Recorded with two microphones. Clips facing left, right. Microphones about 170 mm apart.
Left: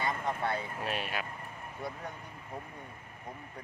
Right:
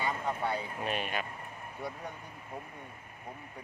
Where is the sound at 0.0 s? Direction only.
10° right (ahead or behind).